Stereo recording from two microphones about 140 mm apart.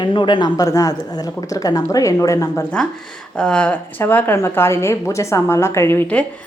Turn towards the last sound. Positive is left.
turn(degrees=10)  # may be behind; listen again after turning